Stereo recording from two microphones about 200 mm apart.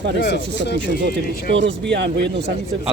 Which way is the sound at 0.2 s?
60° left (ahead or behind).